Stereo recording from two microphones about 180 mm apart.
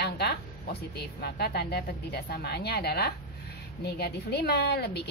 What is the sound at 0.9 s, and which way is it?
A woman's voice, 65° left (ahead or behind).